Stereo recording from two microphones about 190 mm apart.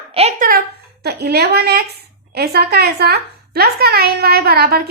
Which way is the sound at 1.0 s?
55° right (ahead or behind).